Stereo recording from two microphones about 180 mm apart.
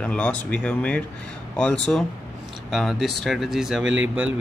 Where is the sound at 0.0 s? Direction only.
5° left (ahead or behind).